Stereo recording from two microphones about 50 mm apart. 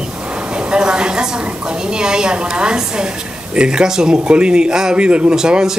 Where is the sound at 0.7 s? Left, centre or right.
Centre.